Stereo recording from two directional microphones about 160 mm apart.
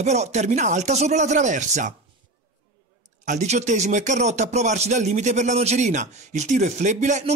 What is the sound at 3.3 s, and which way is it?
A man's voice, 45° right (ahead or behind).